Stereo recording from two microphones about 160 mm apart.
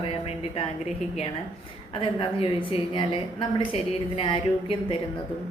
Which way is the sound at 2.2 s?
35° left (ahead or behind).